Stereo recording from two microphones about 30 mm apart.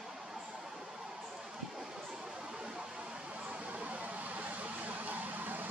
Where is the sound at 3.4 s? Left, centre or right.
Right.